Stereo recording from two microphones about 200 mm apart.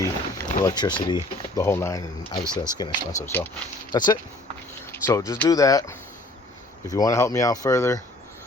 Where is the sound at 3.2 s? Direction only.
10° left (ahead or behind).